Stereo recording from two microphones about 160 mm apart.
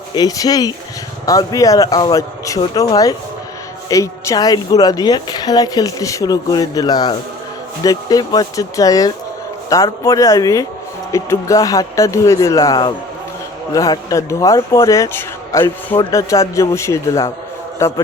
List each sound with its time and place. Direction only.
0.1 s a man's voice: 25° left (ahead or behind)